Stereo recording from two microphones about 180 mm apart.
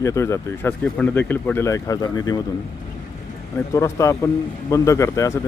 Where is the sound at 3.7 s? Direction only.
15° left (ahead or behind).